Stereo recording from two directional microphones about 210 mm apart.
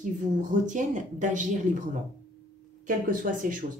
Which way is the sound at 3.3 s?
40° right (ahead or behind).